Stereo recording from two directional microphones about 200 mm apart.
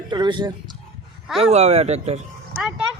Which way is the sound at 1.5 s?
30° right (ahead or behind).